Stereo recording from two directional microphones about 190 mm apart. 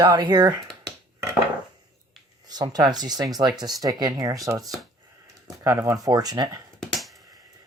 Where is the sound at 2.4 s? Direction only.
20° right (ahead or behind).